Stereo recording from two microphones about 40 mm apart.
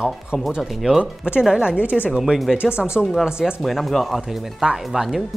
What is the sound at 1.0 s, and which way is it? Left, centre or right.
Speech, right.